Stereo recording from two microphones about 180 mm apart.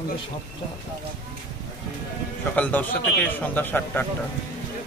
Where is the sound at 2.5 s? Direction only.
10° left (ahead or behind).